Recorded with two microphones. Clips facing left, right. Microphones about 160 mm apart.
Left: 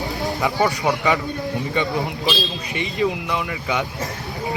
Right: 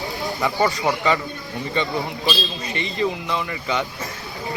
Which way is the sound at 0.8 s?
10° left (ahead or behind).